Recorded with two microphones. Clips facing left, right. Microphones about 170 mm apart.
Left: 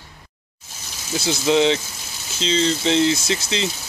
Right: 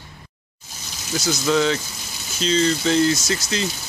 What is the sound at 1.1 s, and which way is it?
Speech, 25° left (ahead or behind).